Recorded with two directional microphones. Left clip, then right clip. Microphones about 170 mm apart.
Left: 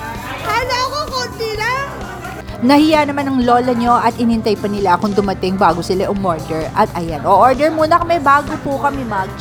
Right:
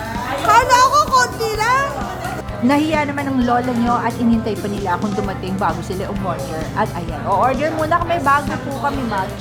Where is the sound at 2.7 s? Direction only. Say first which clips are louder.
Left 6 dB; 35° left (ahead or behind).